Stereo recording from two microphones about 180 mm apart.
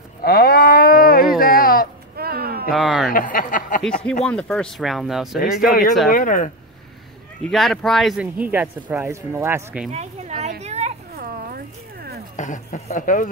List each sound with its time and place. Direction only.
0.2 s cattle: 60° left (ahead or behind)
1.4 s a sound: 55° left (ahead or behind)
2.1 s a sound: 60° right (ahead or behind)
2.7 s speech: centre (ahead or behind)
3.1 s speech: 50° left (ahead or behind)
4.3 s speech: 5° left (ahead or behind)
5.7 s speech: 50° left (ahead or behind)
7.4 s speech: centre (ahead or behind)
9.8 s a woman's voice: 40° right (ahead or behind)
10.6 s children playing: 40° right (ahead or behind)
11.1 s a sound: 55° right (ahead or behind)
12.4 s speech: 40° left (ahead or behind)